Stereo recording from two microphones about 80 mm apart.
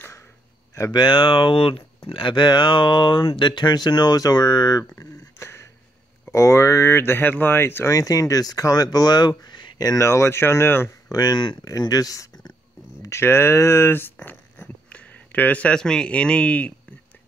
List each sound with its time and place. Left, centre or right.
0.9 s speech: left
4.9 s a sound: left
6.3 s speech: left
9.9 s speech: left
11.1 s speech: left
13.0 s speech: left; by 16.7 s centre